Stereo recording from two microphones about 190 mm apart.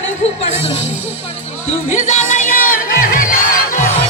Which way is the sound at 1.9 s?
40° left (ahead or behind).